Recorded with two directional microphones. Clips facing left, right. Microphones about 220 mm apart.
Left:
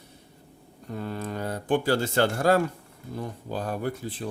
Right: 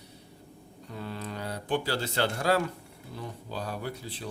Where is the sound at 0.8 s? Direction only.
50° left (ahead or behind).